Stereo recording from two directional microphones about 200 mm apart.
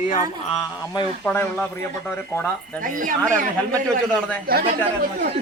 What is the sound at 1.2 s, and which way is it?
Speech, 10° left (ahead or behind).